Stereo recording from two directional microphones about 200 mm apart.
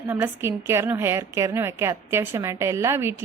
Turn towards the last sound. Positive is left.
turn(degrees=-10)  # may be behind; listen again after turning